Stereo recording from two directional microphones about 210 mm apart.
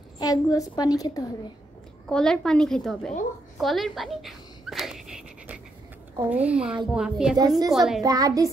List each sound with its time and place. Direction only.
0.2 s a woman's voice: 15° left (ahead or behind)
2.0 s a woman's voice: 5° left (ahead or behind)
3.5 s a sound: centre (ahead or behind)
6.3 s a woman's voice: 5° right (ahead or behind)
7.3 s a woman's voice: 15° right (ahead or behind)
7.7 s a woman's voice: centre (ahead or behind)
8.0 s a woman's voice: 15° right (ahead or behind)